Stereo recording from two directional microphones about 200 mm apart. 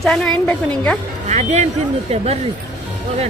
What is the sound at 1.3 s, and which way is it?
Speech, 35° right (ahead or behind).